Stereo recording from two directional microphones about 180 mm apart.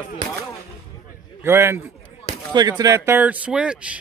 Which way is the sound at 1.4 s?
15° right (ahead or behind).